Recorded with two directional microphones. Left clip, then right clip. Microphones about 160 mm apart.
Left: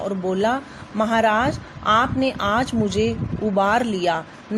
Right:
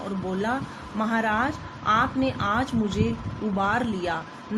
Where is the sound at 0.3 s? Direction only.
45° left (ahead or behind).